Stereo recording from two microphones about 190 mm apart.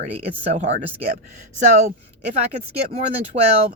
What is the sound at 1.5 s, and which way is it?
Speech, 40° right (ahead or behind).